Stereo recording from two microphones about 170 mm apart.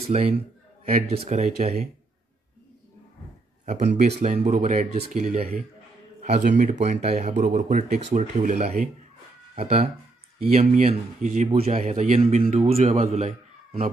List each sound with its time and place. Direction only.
0.1 s speech: 40° right (ahead or behind)
3.6 s a man's voice: 45° right (ahead or behind)